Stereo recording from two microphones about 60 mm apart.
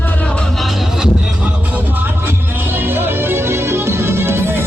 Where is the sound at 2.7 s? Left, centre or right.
Right.